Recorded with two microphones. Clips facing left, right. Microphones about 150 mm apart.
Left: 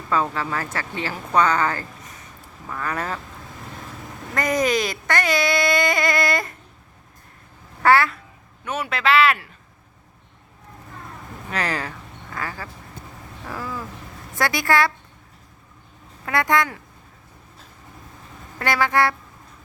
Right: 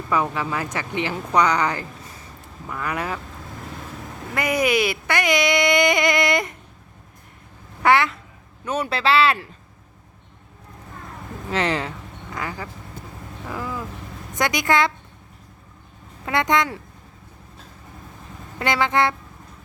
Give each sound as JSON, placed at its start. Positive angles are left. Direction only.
{"t": 0.1, "sound": "speech", "side_deg": -15}
{"t": 4.4, "sound": "speech", "side_deg": -10}
{"t": 7.8, "sound": "speech", "side_deg": -15}
{"t": 8.6, "sound": "speech", "side_deg": -35}
{"t": 11.5, "sound": "speech", "side_deg": -20}
{"t": 13.5, "sound": "a sound", "side_deg": -15}
{"t": 14.3, "sound": "speech", "side_deg": -20}
{"t": 16.2, "sound": "speech", "side_deg": -20}
{"t": 18.6, "sound": "speech", "side_deg": -20}